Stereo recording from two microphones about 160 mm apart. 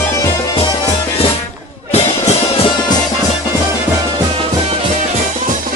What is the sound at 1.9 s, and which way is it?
Music, 45° left (ahead or behind).